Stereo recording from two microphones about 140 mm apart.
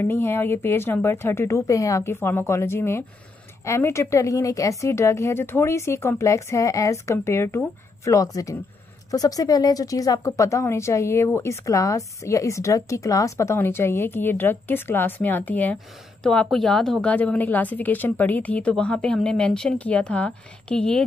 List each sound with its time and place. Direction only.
0.0 s a woman's voice: 15° left (ahead or behind)